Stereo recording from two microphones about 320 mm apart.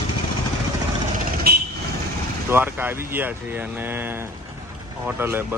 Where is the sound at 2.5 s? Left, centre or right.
Centre.